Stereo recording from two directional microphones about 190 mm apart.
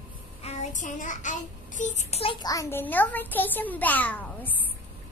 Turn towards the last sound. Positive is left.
turn(degrees=10)  # may be behind; listen again after turning